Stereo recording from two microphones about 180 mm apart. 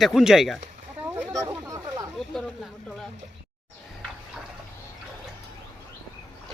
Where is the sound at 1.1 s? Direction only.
10° right (ahead or behind).